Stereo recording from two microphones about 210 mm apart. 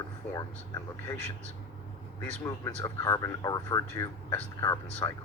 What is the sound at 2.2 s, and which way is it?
Speech, 15° left (ahead or behind).